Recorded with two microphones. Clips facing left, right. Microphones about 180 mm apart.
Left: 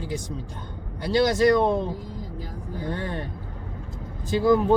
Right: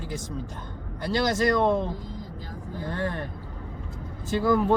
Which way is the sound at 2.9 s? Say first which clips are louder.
Right 5 dB; 20° left (ahead or behind).